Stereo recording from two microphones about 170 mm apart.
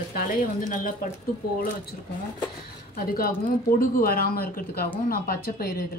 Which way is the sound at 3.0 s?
60° left (ahead or behind).